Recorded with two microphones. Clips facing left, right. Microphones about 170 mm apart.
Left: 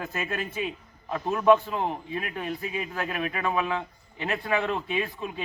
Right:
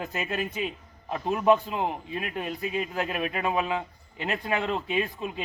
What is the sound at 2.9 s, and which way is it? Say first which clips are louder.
A man's voice: right 1 dB; 15° right (ahead or behind).